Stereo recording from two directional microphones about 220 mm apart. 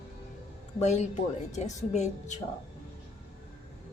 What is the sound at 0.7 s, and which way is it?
Speech, 30° left (ahead or behind).